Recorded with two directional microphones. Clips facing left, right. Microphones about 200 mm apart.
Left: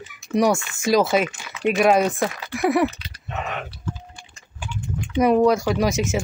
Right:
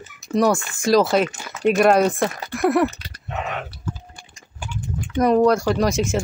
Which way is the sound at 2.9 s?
50° right (ahead or behind).